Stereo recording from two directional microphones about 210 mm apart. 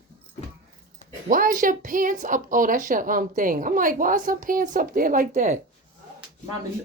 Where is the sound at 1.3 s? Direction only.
40° right (ahead or behind).